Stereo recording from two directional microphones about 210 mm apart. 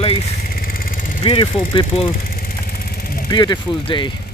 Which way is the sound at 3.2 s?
20° left (ahead or behind).